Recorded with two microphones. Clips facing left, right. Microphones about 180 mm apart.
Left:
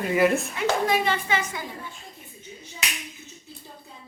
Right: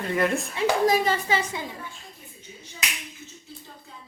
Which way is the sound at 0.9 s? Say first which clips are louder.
Right 1 dB; 35° right (ahead or behind).